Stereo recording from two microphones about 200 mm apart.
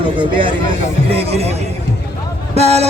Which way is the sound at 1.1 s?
30° right (ahead or behind).